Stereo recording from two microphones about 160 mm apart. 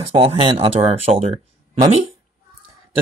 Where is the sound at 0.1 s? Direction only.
35° right (ahead or behind).